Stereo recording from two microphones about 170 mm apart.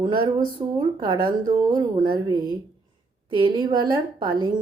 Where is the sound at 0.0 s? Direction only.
25° right (ahead or behind).